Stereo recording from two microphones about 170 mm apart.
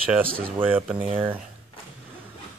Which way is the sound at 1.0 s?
35° right (ahead or behind).